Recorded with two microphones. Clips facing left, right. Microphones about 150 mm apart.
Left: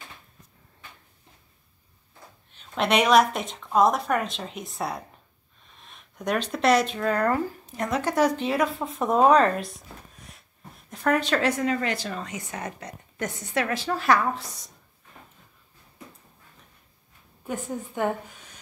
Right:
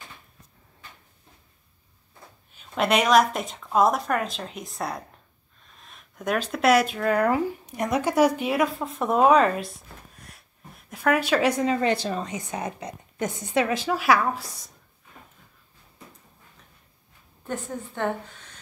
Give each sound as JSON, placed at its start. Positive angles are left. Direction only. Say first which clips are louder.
{"t": 2.5, "sound": "speech", "louder": "right 1 dB", "side_deg": -5}
{"t": 10.1, "sound": "a sound", "louder": "even", "side_deg": 0}
{"t": 10.9, "sound": "a woman's voice", "louder": "right 1 dB", "side_deg": -5}
{"t": 11.6, "sound": "a woman's voice", "louder": "right 3 dB", "side_deg": -25}
{"t": 17.5, "sound": "a woman's voice", "louder": "left 1 dB", "side_deg": 10}